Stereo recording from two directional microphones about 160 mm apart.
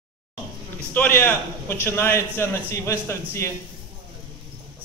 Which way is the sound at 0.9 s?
10° left (ahead or behind).